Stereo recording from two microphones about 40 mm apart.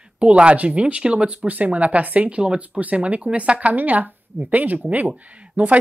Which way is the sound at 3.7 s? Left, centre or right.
Right.